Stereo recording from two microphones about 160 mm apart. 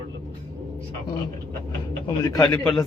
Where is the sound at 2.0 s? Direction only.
25° left (ahead or behind).